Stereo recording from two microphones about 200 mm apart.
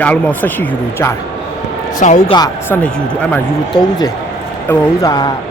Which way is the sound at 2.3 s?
20° left (ahead or behind).